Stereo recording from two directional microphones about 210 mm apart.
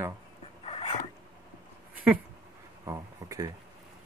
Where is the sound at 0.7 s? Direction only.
25° left (ahead or behind).